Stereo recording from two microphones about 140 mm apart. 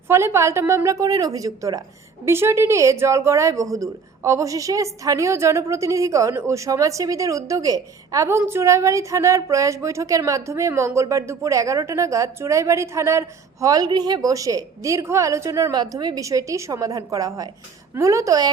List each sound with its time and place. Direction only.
0.1 s a woman's voice: 20° right (ahead or behind)